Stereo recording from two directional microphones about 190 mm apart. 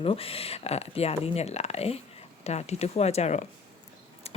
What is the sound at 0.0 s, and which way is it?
Speech, 30° left (ahead or behind).